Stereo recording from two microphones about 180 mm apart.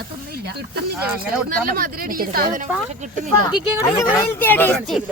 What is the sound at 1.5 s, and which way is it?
A woman's voice, 50° right (ahead or behind).